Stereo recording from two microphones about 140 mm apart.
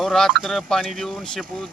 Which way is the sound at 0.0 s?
5° left (ahead or behind).